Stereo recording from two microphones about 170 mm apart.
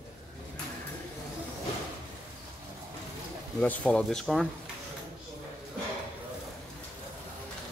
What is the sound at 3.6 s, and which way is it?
Speech, 10° left (ahead or behind).